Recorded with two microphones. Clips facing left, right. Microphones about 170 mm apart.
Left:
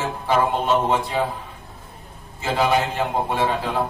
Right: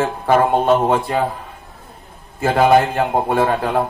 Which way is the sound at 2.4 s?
55° right (ahead or behind).